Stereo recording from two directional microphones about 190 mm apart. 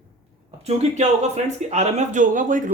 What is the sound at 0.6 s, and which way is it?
Speech, 35° right (ahead or behind).